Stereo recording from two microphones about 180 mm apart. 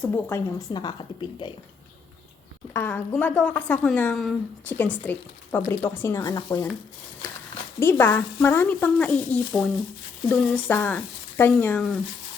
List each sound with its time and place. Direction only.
0.0 s a woman's voice: 10° left (ahead or behind)
0.7 s a woman's voice: 25° left (ahead or behind)
2.7 s a woman's voice: 10° left (ahead or behind)
7.8 s a woman's voice: 10° left (ahead or behind)